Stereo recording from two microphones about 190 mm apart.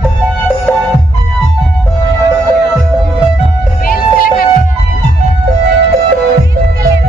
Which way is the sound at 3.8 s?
50° left (ahead or behind).